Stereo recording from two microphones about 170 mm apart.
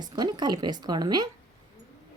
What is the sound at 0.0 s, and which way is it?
Speech, 25° right (ahead or behind).